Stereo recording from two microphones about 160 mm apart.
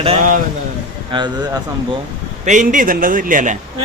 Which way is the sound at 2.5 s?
55° right (ahead or behind).